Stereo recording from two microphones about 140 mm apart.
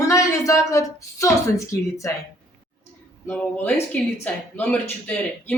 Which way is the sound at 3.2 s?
10° left (ahead or behind).